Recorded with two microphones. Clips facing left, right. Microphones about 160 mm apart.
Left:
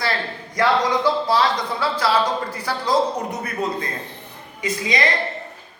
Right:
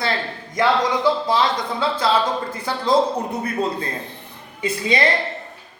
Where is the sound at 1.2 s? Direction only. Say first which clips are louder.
Even; 20° right (ahead or behind).